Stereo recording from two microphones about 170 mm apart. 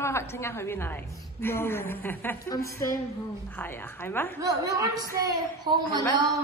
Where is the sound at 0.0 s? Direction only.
15° left (ahead or behind).